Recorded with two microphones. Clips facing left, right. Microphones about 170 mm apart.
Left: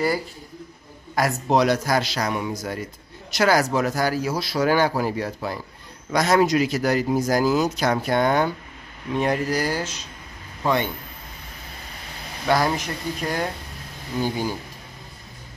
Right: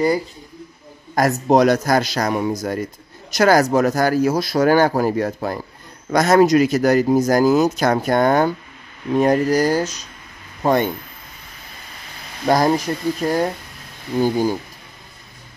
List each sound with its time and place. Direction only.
1.1 s a man's voice: 45° right (ahead or behind)
12.4 s speech: 40° right (ahead or behind)